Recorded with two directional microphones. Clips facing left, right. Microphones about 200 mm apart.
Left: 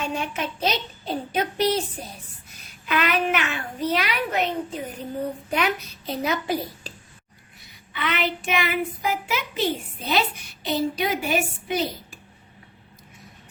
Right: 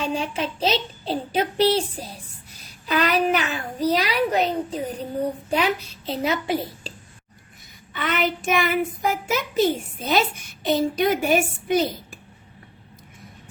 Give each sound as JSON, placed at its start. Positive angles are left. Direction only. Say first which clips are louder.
{"t": 0.0, "sound": "a child's voice", "louder": "right 3 dB", "side_deg": -30}
{"t": 2.8, "sound": "a child's voice", "louder": "right 3 dB", "side_deg": -35}
{"t": 7.9, "sound": "a woman's voice", "louder": "right 2 dB", "side_deg": -45}